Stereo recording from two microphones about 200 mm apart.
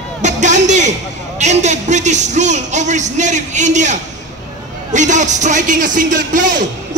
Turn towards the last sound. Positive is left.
turn(degrees=-40)  # may be behind; listen again after turning